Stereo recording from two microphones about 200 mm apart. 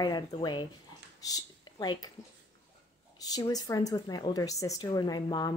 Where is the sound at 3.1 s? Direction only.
20° left (ahead or behind).